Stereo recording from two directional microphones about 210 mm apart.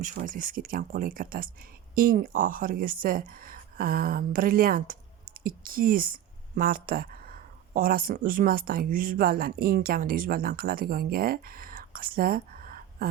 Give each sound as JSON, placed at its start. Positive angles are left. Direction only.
{"t": 0.0, "sound": "speech", "side_deg": -40}